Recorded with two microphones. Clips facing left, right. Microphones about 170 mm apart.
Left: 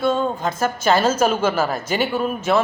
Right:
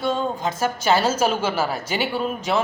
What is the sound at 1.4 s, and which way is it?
Speech, 50° left (ahead or behind).